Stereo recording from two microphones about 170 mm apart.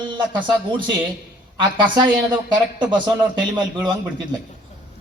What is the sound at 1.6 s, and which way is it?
A man's voice, 30° right (ahead or behind).